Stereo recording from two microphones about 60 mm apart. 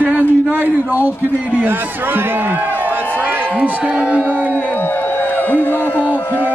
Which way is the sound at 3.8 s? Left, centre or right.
Centre.